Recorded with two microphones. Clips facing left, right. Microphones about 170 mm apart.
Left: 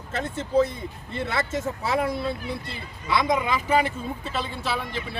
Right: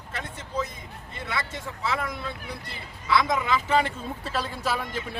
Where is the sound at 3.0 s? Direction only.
20° left (ahead or behind).